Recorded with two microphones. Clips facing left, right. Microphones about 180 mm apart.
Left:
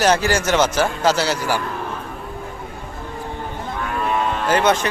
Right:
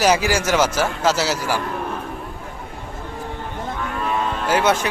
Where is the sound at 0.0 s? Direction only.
10° right (ahead or behind).